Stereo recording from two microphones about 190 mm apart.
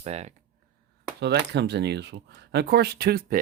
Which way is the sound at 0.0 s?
35° right (ahead or behind).